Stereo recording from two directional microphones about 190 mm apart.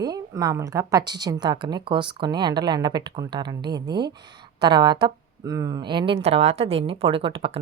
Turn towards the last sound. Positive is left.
turn(degrees=-30)  # may be behind; listen again after turning